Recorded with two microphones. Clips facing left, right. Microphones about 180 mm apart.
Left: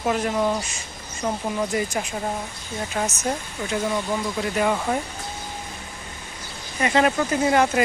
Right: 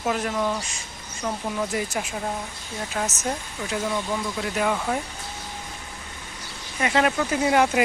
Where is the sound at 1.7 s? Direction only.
Centre (ahead or behind).